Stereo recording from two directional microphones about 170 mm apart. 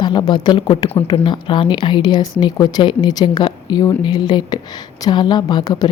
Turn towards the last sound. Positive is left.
turn(degrees=25)  # may be behind; listen again after turning